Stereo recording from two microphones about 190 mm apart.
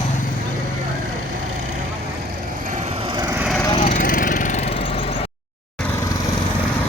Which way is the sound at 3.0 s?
20° right (ahead or behind).